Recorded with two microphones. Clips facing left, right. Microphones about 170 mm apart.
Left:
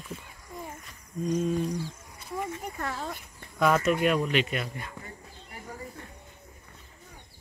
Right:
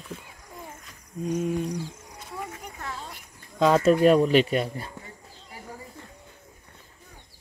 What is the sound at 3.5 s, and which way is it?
Speech, 25° right (ahead or behind).